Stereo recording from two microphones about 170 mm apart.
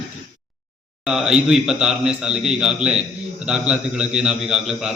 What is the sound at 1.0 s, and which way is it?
A man's voice, 5° right (ahead or behind).